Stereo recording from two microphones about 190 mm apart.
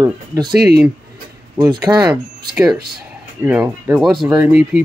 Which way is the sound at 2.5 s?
5° right (ahead or behind).